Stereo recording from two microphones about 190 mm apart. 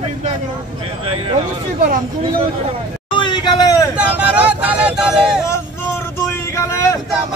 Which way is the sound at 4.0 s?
5° right (ahead or behind).